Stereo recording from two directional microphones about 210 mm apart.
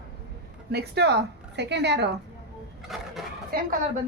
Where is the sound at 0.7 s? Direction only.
50° right (ahead or behind).